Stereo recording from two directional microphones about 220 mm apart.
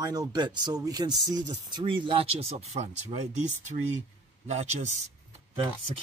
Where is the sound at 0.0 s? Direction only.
15° right (ahead or behind).